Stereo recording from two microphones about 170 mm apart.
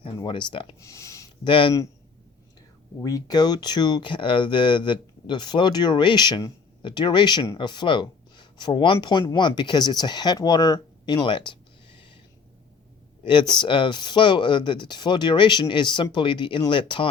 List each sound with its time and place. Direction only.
0.2 s speech: 30° left (ahead or behind)
0.8 s speech: 20° left (ahead or behind)
1.5 s speech: 30° left (ahead or behind)
3.0 s speech: 20° left (ahead or behind)
13.6 s speech: 30° left (ahead or behind)